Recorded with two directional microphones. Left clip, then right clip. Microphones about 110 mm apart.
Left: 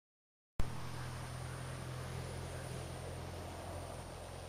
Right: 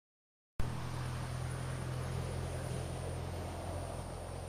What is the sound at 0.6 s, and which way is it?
Vehicle, 15° right (ahead or behind).